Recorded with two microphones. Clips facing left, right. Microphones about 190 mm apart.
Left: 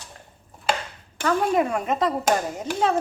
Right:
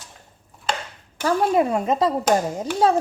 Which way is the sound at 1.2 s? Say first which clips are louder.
Right 2 dB; 30° right (ahead or behind).